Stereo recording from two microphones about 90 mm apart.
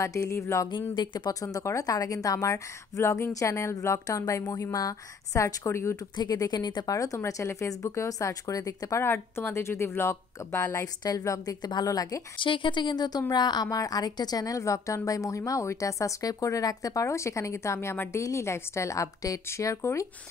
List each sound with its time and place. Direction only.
0.0 s a woman's voice: 35° left (ahead or behind)
0.9 s a woman's voice: 55° left (ahead or behind)
1.4 s a woman's voice: 35° left (ahead or behind)
6.1 s a woman's voice: 45° left (ahead or behind)
9.0 s a woman's voice: 25° left (ahead or behind); by 12.2 s 45° left (ahead or behind)
12.4 s a woman's voice: 65° left (ahead or behind); by 20.1 s 35° left (ahead or behind)